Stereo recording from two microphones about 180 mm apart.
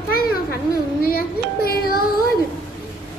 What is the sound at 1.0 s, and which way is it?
Child singing, 55° left (ahead or behind).